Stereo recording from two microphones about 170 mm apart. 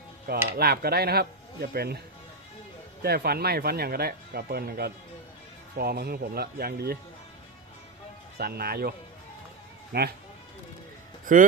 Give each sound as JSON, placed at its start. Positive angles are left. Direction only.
{"t": 0.4, "sound": "speech", "side_deg": -60}
{"t": 3.0, "sound": "speech", "side_deg": -65}
{"t": 8.4, "sound": "speech", "side_deg": -65}
{"t": 9.9, "sound": "speech", "side_deg": -65}